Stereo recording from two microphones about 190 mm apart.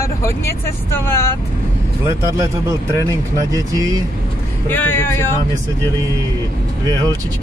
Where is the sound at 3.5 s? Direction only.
20° right (ahead or behind).